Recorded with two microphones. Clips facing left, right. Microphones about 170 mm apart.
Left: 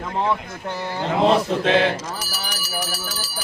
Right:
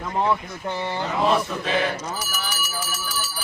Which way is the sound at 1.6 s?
80° left.